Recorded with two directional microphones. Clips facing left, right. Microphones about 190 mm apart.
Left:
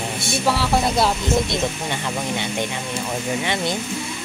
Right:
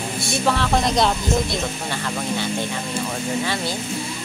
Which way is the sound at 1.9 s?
20° left (ahead or behind).